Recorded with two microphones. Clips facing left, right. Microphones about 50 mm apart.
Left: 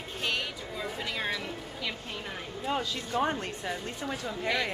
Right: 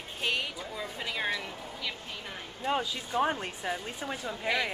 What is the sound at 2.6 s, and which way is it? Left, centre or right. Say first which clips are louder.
Speech: right 1 dB; centre.